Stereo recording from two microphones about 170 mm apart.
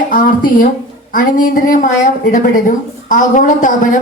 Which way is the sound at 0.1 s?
55° left (ahead or behind).